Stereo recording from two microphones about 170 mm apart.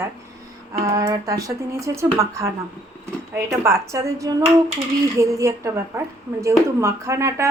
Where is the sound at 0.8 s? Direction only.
25° right (ahead or behind).